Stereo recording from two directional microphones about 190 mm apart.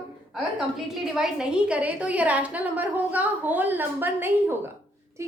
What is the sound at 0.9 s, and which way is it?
A woman's voice, centre (ahead or behind).